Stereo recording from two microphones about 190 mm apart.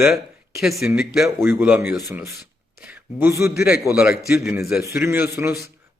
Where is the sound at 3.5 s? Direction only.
55° left (ahead or behind).